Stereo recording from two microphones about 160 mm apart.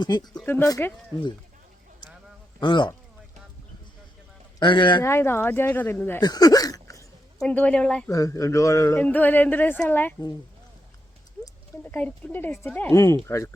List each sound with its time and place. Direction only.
0.0 s speech: 25° left (ahead or behind)
0.3 s speech: 15° left (ahead or behind)
2.6 s speech: 30° left (ahead or behind)
4.6 s speech: 30° left (ahead or behind)
5.0 s speech: 15° left (ahead or behind)
6.2 s a sound: 25° left (ahead or behind)
7.3 s speech: 5° left (ahead or behind)
8.1 s speech: 20° left (ahead or behind)
11.8 s speech: 10° left (ahead or behind)